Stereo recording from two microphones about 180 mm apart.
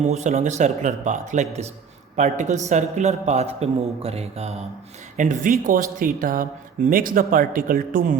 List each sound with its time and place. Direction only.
0.0 s a man's voice: 40° right (ahead or behind)